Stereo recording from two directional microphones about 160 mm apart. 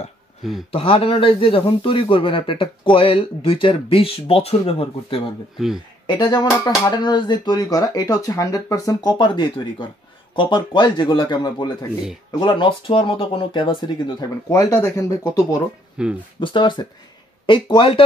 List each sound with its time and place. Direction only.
0.7 s speech: 35° left (ahead or behind)
6.0 s speech: 25° left (ahead or behind)
16.0 s speech: 5° right (ahead or behind)
16.3 s speech: 30° left (ahead or behind)